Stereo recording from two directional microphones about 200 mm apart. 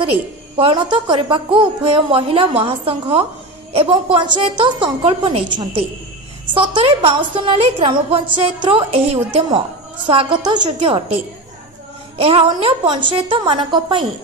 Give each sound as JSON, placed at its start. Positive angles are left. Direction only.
{"t": 0.6, "sound": "a woman's voice", "side_deg": -25}
{"t": 12.2, "sound": "a woman's voice", "side_deg": -30}